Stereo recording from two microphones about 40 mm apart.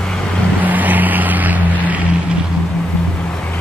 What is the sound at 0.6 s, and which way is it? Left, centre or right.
Vehicle, right.